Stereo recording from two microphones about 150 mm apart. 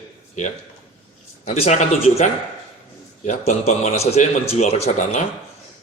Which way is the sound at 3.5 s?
50° left (ahead or behind).